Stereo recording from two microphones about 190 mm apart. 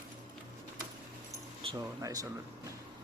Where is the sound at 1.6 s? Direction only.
20° right (ahead or behind).